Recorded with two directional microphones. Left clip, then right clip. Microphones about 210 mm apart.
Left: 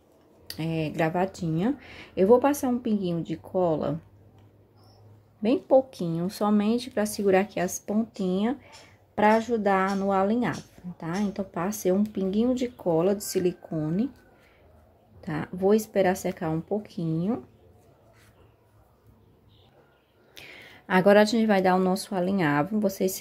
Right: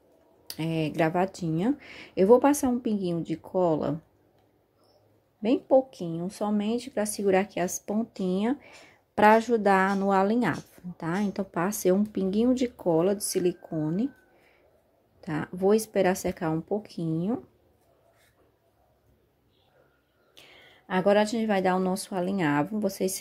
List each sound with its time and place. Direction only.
0.5 s speech: 15° right (ahead or behind)
5.4 s speech: 10° right (ahead or behind)
15.1 s speech: 10° right (ahead or behind)
20.3 s a woman's voice: 10° left (ahead or behind)